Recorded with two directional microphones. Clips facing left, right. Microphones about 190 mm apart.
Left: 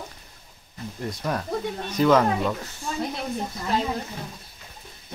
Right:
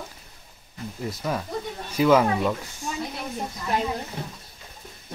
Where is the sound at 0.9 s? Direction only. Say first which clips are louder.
Even; centre (ahead or behind).